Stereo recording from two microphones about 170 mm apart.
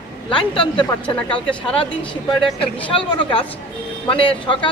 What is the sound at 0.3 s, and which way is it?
A woman's voice, 30° left (ahead or behind).